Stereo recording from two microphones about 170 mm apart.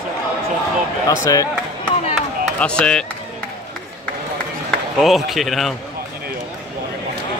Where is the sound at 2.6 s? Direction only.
5° left (ahead or behind).